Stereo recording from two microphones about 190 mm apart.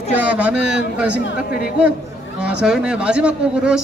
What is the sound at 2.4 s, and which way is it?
A woman's voice, 5° right (ahead or behind).